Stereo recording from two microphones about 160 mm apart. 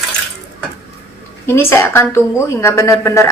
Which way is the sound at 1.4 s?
15° left (ahead or behind).